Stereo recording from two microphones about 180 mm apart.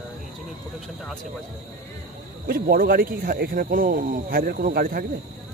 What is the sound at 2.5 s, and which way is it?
Speech, 55° right (ahead or behind).